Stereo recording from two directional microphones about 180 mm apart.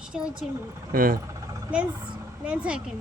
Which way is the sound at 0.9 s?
50° right (ahead or behind).